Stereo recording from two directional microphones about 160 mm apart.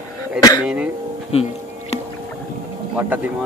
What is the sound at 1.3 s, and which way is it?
Speech, 40° left (ahead or behind).